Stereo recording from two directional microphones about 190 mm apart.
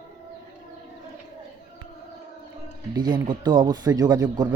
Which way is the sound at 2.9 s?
25° right (ahead or behind).